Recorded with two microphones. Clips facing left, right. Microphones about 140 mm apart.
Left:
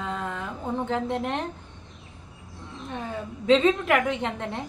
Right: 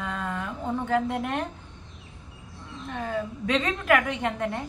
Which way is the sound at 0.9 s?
25° left (ahead or behind).